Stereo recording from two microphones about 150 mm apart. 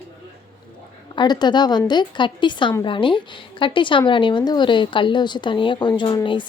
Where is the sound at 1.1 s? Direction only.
30° left (ahead or behind).